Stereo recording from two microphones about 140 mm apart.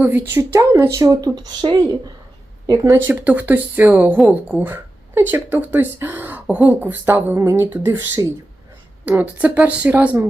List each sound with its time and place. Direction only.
0.0 s speech: 15° right (ahead or behind)
3.1 s speech: 10° right (ahead or behind)